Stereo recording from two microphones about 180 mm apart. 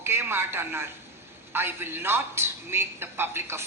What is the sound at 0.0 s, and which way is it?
A woman's voice, 15° right (ahead or behind).